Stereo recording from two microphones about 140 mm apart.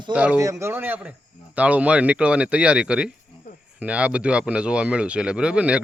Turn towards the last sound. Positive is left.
turn(degrees=-5)  # may be behind; listen again after turning